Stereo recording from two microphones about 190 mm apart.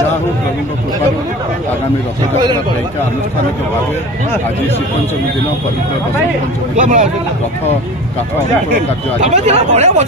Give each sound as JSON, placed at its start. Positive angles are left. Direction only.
{"t": 6.8, "sound": "speech", "side_deg": -40}
{"t": 8.7, "sound": "speech", "side_deg": -40}